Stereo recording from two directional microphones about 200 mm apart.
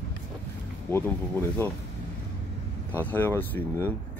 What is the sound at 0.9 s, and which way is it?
Speech, 10° left (ahead or behind).